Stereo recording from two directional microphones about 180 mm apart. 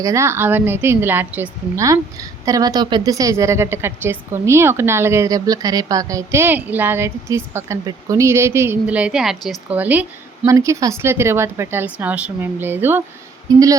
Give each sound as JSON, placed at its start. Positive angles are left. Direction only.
{"t": 0.0, "sound": "a woman's voice", "side_deg": -15}